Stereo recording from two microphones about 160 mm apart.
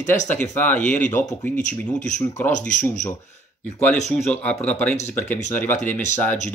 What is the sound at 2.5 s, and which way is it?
Speech, 50° left (ahead or behind).